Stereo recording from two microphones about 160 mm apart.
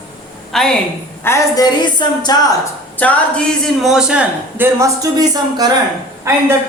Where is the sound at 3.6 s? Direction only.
Centre (ahead or behind).